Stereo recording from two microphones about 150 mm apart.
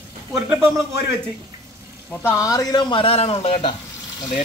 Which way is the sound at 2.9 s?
40° left (ahead or behind).